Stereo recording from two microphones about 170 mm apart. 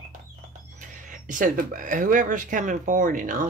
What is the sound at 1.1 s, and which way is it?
Speech, 50° right (ahead or behind).